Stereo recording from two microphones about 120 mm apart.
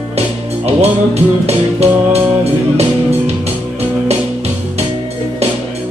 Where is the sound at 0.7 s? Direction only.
60° right (ahead or behind).